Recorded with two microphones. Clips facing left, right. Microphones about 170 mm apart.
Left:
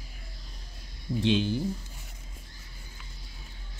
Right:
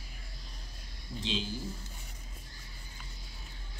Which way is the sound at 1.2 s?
60° left (ahead or behind).